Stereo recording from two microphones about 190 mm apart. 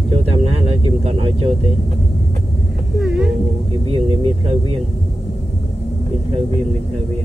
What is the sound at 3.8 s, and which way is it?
Speech, 30° right (ahead or behind).